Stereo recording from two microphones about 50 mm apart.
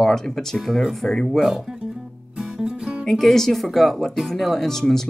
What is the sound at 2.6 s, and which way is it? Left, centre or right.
Music, centre.